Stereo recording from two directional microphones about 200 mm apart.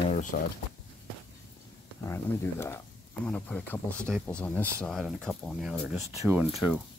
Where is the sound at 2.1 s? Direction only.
10° left (ahead or behind).